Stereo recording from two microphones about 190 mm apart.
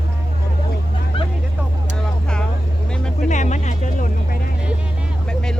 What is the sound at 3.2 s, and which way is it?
Music, 40° left (ahead or behind).